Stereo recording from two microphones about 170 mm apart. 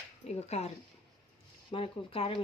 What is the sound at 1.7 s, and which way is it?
Speech, 35° left (ahead or behind).